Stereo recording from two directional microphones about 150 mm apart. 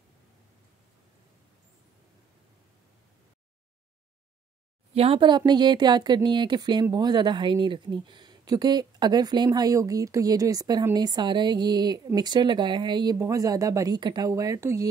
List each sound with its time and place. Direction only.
4.9 s speech: 40° right (ahead or behind); by 14.9 s 20° right (ahead or behind)